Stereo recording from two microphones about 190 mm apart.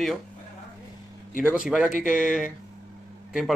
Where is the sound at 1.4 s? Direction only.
5° right (ahead or behind).